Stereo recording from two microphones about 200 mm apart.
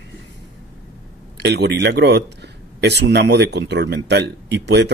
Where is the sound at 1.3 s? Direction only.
60° right (ahead or behind).